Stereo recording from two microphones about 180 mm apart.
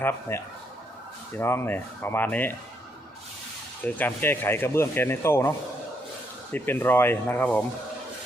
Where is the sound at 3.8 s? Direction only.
10° left (ahead or behind).